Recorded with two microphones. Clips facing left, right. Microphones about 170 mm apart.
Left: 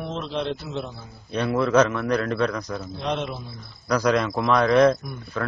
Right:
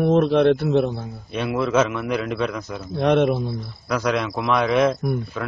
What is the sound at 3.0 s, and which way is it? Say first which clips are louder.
Speech: right 12 dB; 60° right (ahead or behind).